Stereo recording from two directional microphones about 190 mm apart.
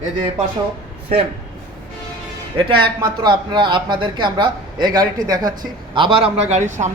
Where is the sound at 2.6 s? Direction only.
25° right (ahead or behind).